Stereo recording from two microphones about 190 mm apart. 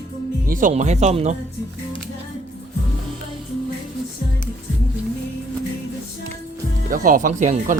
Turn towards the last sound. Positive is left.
turn(degrees=-40)  # may be behind; listen again after turning